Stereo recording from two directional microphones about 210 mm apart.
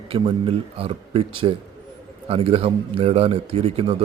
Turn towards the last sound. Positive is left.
turn(degrees=-30)  # may be behind; listen again after turning